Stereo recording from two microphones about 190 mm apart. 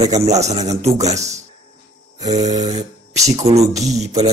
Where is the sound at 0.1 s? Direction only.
35° right (ahead or behind).